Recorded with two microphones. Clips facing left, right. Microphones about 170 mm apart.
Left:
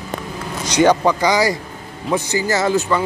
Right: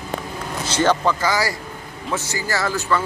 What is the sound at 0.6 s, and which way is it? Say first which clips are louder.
Speech: left 5 dB; 15° left (ahead or behind).